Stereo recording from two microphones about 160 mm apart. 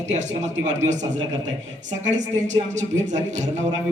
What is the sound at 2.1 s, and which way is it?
Speech, 50° right (ahead or behind).